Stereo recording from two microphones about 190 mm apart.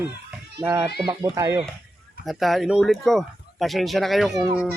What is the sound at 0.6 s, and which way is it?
Speech, 15° right (ahead or behind).